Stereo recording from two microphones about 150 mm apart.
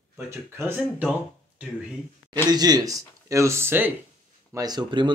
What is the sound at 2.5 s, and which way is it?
Speech, 25° right (ahead or behind).